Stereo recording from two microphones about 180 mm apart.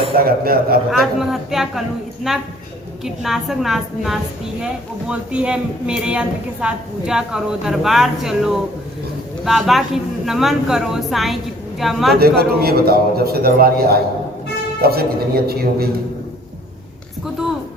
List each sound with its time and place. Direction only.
0.2 s a man's voice: 55° right (ahead or behind)
0.9 s speech: centre (ahead or behind)
12.2 s a man's voice: 60° right (ahead or behind)